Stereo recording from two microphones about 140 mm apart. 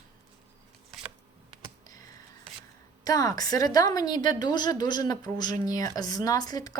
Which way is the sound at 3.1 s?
25° left (ahead or behind).